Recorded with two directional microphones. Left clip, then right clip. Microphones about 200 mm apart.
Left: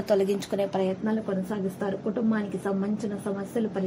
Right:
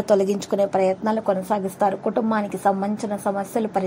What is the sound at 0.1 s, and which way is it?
A woman's voice, 25° right (ahead or behind).